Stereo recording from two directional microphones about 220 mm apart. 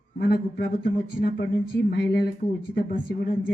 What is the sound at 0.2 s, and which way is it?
Speech, 45° left (ahead or behind).